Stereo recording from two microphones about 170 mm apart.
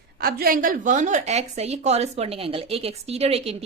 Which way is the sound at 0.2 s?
60° right (ahead or behind).